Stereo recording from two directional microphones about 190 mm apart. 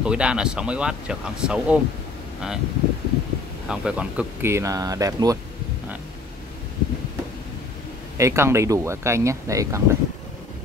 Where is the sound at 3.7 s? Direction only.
5° right (ahead or behind).